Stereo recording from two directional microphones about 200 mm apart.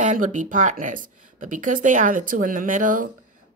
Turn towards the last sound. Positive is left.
turn(degrees=-40)  # may be behind; listen again after turning